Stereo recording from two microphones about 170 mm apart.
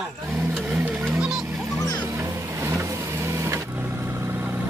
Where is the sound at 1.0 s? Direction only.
5° right (ahead or behind).